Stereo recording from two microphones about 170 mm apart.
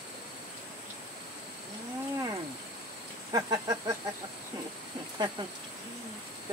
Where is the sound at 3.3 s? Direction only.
25° right (ahead or behind).